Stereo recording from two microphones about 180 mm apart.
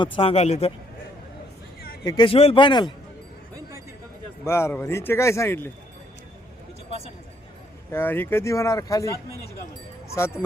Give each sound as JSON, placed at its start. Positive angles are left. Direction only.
{"t": 0.0, "sound": "speech", "side_deg": 30}
{"t": 2.0, "sound": "a man's voice", "side_deg": 25}
{"t": 4.4, "sound": "speech", "side_deg": 15}
{"t": 7.9, "sound": "speech", "side_deg": 10}